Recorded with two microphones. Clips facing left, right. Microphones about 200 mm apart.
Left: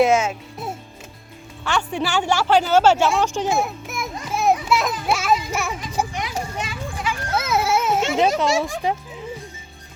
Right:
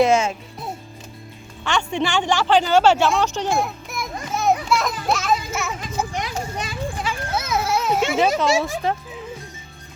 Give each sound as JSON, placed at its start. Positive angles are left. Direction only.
{"t": 0.0, "sound": "speech", "side_deg": 5}
{"t": 3.3, "sound": "children playing", "side_deg": 5}
{"t": 6.1, "sound": "children playing", "side_deg": -35}
{"t": 7.4, "sound": "a sound", "side_deg": 5}
{"t": 8.1, "sound": "speech", "side_deg": -5}
{"t": 8.8, "sound": "speech", "side_deg": 15}